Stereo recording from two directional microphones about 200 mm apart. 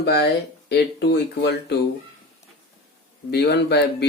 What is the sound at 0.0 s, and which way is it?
Speech, 55° left (ahead or behind).